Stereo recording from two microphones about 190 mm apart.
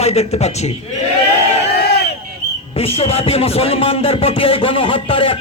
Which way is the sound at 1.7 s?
60° left (ahead or behind).